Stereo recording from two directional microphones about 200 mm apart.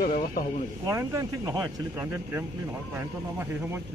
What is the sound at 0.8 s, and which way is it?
Speech, 15° right (ahead or behind).